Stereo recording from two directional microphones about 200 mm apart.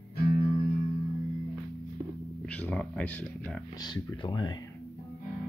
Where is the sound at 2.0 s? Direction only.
10° right (ahead or behind).